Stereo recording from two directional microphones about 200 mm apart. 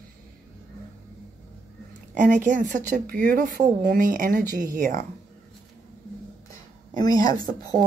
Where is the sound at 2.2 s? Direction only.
40° right (ahead or behind).